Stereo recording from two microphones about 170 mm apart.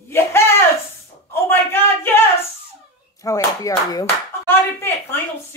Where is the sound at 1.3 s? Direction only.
15° left (ahead or behind).